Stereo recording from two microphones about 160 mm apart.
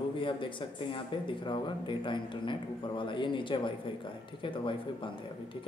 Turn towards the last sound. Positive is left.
turn(degrees=30)  # may be behind; listen again after turning